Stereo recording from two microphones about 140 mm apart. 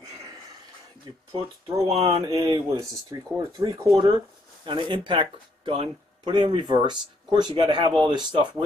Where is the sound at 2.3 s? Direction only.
30° right (ahead or behind).